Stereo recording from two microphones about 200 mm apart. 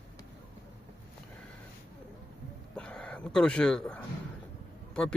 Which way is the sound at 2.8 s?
5° left (ahead or behind).